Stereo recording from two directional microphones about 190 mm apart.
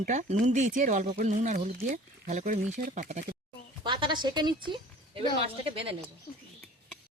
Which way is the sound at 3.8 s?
25° right (ahead or behind).